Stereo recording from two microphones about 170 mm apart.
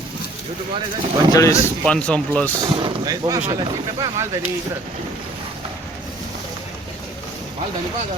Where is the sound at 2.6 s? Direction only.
30° right (ahead or behind).